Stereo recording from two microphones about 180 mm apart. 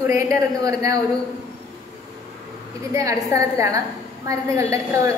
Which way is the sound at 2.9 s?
15° right (ahead or behind).